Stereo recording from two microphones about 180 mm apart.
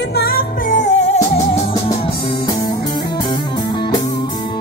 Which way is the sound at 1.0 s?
40° left (ahead or behind).